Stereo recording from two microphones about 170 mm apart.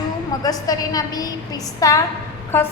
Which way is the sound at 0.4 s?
20° left (ahead or behind).